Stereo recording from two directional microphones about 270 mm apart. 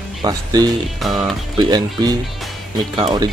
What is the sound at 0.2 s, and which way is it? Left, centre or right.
Speech, centre.